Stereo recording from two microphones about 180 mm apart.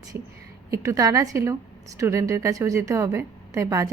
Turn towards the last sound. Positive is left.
turn(degrees=-20)  # may be behind; listen again after turning